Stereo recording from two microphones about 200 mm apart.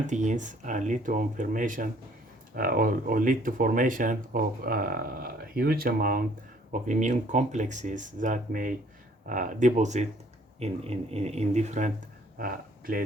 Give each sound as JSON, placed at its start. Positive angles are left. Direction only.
{"t": 0.1, "sound": "speech", "side_deg": -40}
{"t": 12.4, "sound": "speech", "side_deg": -45}